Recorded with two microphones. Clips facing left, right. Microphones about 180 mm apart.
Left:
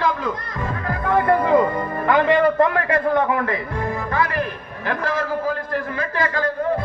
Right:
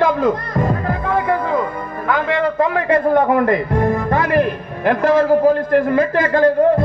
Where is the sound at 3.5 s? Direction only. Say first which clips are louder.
Right 9 dB; 50° right (ahead or behind).